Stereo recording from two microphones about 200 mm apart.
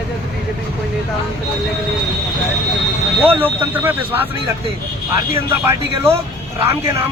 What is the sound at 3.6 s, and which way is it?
Speech, 10° right (ahead or behind).